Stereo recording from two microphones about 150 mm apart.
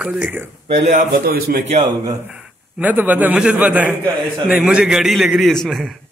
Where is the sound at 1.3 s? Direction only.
85° right.